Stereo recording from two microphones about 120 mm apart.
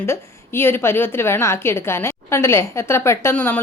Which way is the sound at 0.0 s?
20° left (ahead or behind).